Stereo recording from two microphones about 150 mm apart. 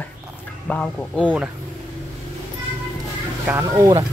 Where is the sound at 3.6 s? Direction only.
20° right (ahead or behind).